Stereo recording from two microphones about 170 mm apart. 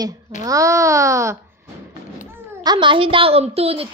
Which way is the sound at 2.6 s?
30° right (ahead or behind).